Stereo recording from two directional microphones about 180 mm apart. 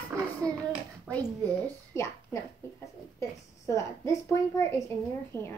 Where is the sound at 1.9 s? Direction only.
15° left (ahead or behind).